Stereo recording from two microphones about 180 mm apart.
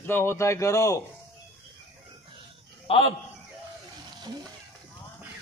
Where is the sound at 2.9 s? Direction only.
30° left (ahead or behind).